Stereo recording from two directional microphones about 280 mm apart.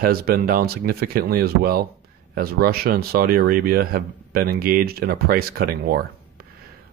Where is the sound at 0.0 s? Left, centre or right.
Right.